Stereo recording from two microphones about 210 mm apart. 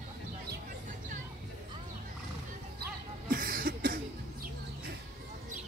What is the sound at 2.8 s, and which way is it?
Cough, 45° right (ahead or behind).